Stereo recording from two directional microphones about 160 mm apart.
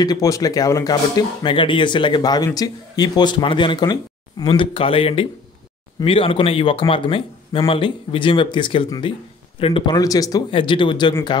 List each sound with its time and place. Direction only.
0.0 s speech: 20° left (ahead or behind)